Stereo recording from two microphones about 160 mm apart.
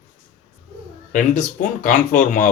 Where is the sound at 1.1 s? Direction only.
55° left (ahead or behind).